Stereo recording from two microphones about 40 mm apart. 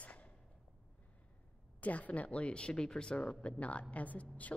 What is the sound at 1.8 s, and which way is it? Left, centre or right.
A woman's voice, left.